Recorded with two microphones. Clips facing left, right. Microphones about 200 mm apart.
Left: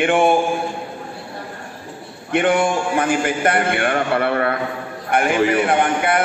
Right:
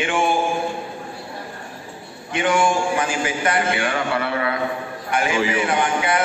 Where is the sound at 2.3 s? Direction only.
55° left (ahead or behind).